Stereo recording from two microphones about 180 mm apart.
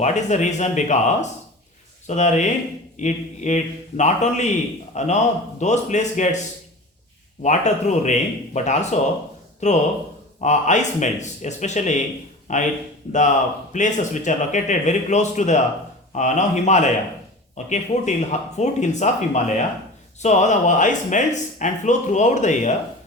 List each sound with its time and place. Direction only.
0.0 s speech: 40° left (ahead or behind)
7.4 s a man's voice: 40° left (ahead or behind)
13.7 s speech: 45° left (ahead or behind)